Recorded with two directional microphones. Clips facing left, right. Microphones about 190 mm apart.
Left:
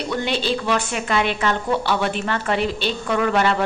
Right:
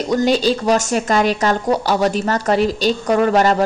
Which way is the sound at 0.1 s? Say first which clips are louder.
Right 8 dB; 40° right (ahead or behind).